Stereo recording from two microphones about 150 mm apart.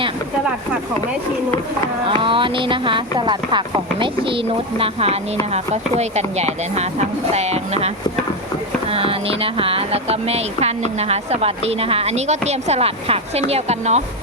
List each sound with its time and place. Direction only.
2.0 s speech: 35° right (ahead or behind)